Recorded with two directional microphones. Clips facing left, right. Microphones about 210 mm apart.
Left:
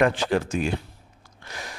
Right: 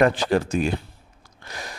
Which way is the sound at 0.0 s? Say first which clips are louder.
Right 2 dB; 35° right (ahead or behind).